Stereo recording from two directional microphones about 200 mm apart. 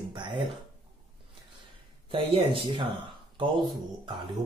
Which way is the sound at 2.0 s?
25° right (ahead or behind).